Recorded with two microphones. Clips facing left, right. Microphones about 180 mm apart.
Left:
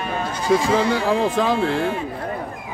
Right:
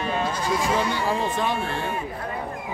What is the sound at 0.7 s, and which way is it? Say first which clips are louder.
Speech: left 5 dB; 90° left.